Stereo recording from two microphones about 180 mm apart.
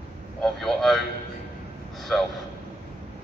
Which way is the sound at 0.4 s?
Centre (ahead or behind).